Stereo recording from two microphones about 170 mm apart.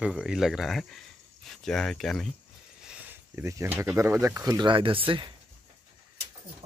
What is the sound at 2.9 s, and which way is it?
Speech, 10° right (ahead or behind).